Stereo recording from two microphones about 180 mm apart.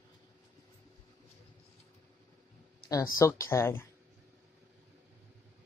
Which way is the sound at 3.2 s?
15° left (ahead or behind).